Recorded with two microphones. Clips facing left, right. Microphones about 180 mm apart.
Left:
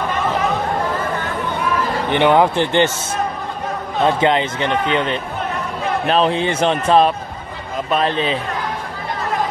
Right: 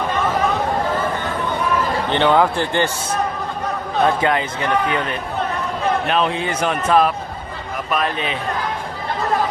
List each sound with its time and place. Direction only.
2.0 s speech: 15° left (ahead or behind)
4.0 s a man's voice: 25° left (ahead or behind)